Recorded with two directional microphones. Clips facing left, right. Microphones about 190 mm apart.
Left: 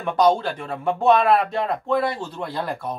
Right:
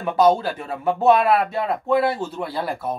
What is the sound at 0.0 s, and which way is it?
Speech, 5° right (ahead or behind).